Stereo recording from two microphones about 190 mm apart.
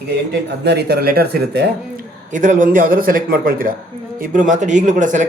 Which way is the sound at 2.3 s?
40° right (ahead or behind).